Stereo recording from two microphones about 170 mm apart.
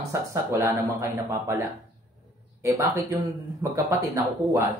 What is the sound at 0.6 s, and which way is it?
Speech, 15° right (ahead or behind).